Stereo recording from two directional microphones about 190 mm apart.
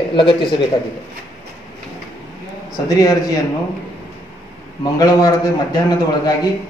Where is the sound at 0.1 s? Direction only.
25° left (ahead or behind).